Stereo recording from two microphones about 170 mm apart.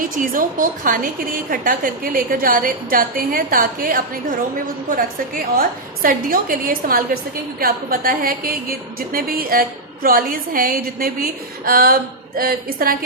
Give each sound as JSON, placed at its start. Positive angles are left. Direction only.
{"t": 0.0, "sound": "a woman's voice", "side_deg": -55}